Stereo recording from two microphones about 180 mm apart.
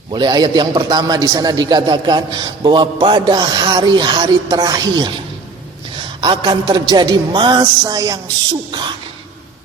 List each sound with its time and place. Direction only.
0.1 s a man's voice: 25° right (ahead or behind)
6.2 s a man's voice: 25° right (ahead or behind)